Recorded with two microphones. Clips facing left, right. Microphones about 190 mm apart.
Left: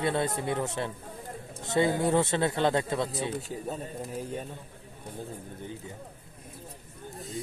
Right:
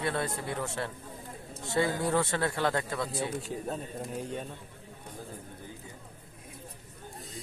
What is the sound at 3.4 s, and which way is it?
Speech, centre (ahead or behind).